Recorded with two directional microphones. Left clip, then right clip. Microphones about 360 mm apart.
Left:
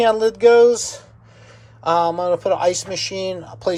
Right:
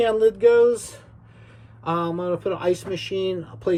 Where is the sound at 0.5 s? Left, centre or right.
Left.